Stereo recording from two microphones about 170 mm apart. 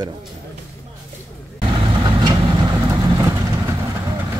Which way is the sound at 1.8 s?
25° right (ahead or behind).